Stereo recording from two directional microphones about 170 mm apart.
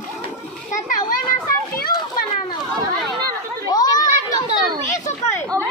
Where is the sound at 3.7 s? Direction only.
20° left (ahead or behind).